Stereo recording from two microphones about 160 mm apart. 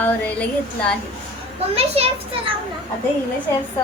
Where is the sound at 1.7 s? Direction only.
40° right (ahead or behind).